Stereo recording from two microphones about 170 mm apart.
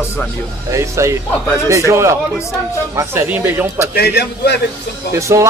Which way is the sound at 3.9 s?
75° left (ahead or behind).